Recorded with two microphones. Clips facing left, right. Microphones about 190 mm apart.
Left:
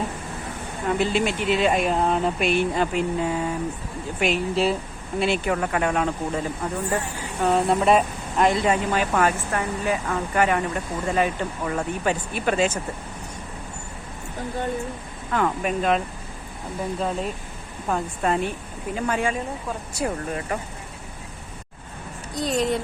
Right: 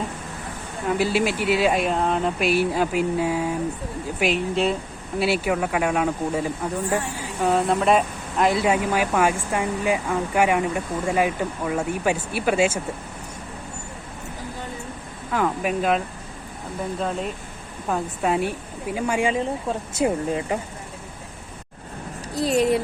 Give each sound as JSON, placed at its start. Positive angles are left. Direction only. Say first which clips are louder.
{"t": 0.9, "sound": "speech", "louder": "right 1 dB", "side_deg": -5}
{"t": 15.3, "sound": "speech", "louder": "even", "side_deg": -5}
{"t": 17.0, "sound": "speech", "louder": "even", "side_deg": 0}
{"t": 22.4, "sound": "speech", "louder": "right 4 dB", "side_deg": 0}